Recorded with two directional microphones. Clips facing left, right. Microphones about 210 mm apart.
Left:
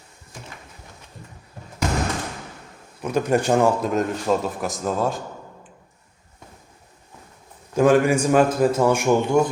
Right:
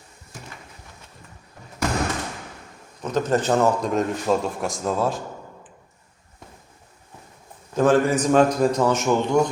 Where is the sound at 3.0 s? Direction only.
10° left (ahead or behind).